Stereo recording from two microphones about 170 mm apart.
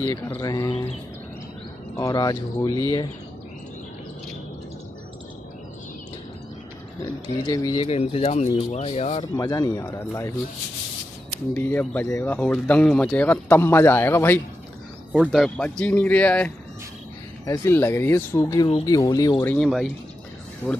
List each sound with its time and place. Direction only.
0.0 s speech: 10° left (ahead or behind)
0.4 s speech: 20° left (ahead or behind)
2.0 s speech: 20° left (ahead or behind)
7.0 s speech: 25° left (ahead or behind)
7.9 s speech: 35° left (ahead or behind)
9.4 s speech: 20° left (ahead or behind)
11.5 s speech: 10° left (ahead or behind)
15.1 s speech: centre (ahead or behind); by 19.6 s 15° left (ahead or behind)
19.6 s speech: centre (ahead or behind)